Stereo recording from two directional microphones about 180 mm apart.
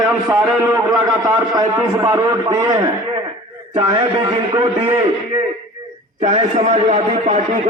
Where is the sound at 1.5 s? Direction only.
25° right (ahead or behind).